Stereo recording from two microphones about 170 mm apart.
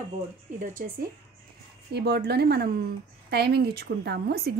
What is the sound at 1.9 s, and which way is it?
A woman's voice, 70° right (ahead or behind).